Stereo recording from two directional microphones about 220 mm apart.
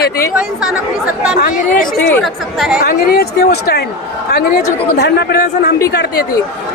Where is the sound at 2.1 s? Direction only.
Centre (ahead or behind).